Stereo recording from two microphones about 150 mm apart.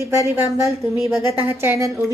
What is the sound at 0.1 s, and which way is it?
A woman's voice, 20° right (ahead or behind).